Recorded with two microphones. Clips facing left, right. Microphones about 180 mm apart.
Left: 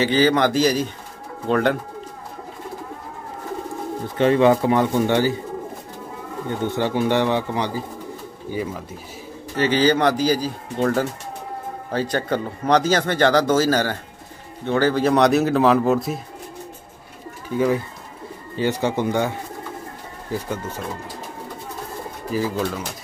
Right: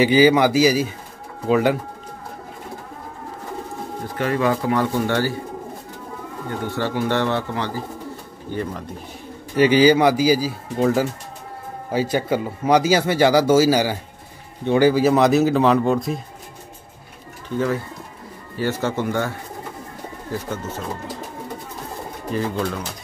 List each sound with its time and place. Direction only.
0.0 s speech: 10° right (ahead or behind)
4.2 s speech: 25° left (ahead or behind)
6.6 s speech: 20° left (ahead or behind)
9.6 s speech: 10° right (ahead or behind)
17.6 s speech: 15° left (ahead or behind)
22.3 s speech: 5° left (ahead or behind)